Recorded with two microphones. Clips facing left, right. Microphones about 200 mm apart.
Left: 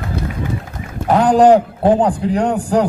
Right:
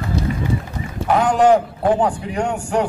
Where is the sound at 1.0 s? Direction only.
35° left (ahead or behind).